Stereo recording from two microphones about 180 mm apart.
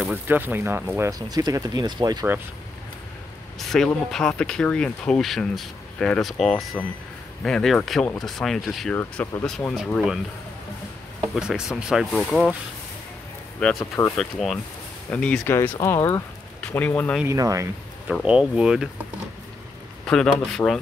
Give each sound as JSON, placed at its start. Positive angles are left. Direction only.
{"t": 0.0, "sound": "speech", "side_deg": -10}
{"t": 3.5, "sound": "speech", "side_deg": 0}
{"t": 11.1, "sound": "speech", "side_deg": -5}
{"t": 13.7, "sound": "speech", "side_deg": 15}
{"t": 14.1, "sound": "speech", "side_deg": 0}
{"t": 17.2, "sound": "speech", "side_deg": -20}
{"t": 18.0, "sound": "speech", "side_deg": -5}
{"t": 20.1, "sound": "speech", "side_deg": 5}